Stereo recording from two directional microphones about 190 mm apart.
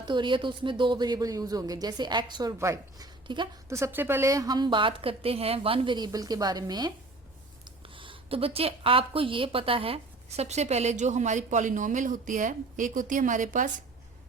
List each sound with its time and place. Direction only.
0.0 s speech: 25° right (ahead or behind); by 13.7 s 40° right (ahead or behind)